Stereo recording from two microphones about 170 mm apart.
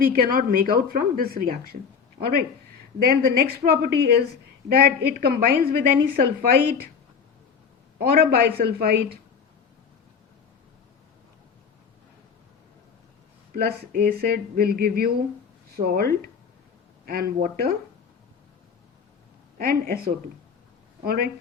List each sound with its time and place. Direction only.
0.0 s a woman's voice: 55° right (ahead or behind)
7.9 s a woman's voice: 60° right (ahead or behind)
13.5 s a woman's voice: 60° right (ahead or behind)
17.1 s a woman's voice: 60° right (ahead or behind)
19.5 s a woman's voice: 60° right (ahead or behind)
21.0 s a woman's voice: 65° right (ahead or behind)